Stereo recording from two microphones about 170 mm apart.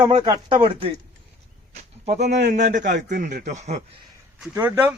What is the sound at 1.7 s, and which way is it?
A man's voice, 40° right (ahead or behind).